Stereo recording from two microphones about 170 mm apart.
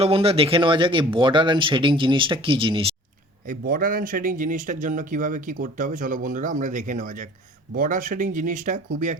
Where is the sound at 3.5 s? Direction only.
55° right (ahead or behind).